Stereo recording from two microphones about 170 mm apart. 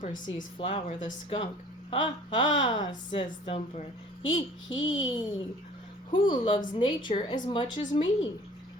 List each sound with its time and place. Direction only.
0.0 s speech: 50° left (ahead or behind)
0.6 s a woman's voice: 35° left (ahead or behind)